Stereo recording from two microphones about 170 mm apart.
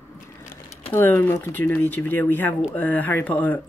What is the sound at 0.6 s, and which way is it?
Speech, 10° left (ahead or behind).